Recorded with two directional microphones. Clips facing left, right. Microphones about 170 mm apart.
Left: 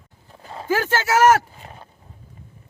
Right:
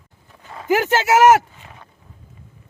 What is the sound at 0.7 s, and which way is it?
Speech, 20° right (ahead or behind).